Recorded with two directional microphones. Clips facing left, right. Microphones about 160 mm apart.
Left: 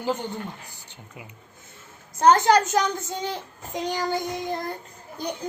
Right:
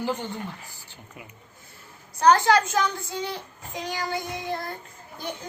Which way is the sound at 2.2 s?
20° left (ahead or behind).